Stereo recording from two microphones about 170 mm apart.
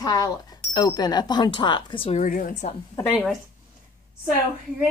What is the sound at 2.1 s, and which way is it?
Speech, 55° left (ahead or behind).